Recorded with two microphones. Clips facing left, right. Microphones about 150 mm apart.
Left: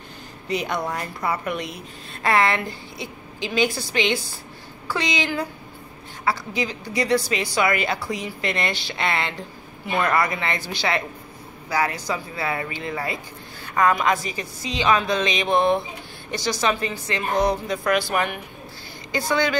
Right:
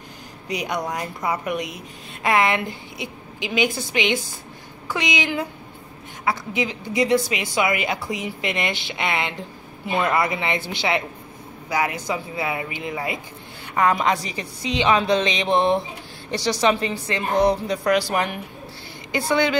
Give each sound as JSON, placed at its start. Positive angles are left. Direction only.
{"t": 0.5, "sound": "a woman's voice", "side_deg": -15}
{"t": 13.7, "sound": "a woman's voice", "side_deg": -30}